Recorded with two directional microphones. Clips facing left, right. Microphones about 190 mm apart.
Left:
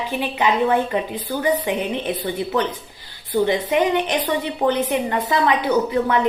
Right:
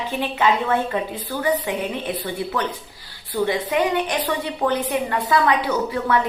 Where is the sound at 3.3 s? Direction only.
20° left (ahead or behind).